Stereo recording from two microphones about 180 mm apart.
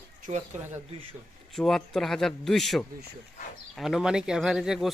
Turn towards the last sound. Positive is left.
turn(degrees=-5)  # may be behind; listen again after turning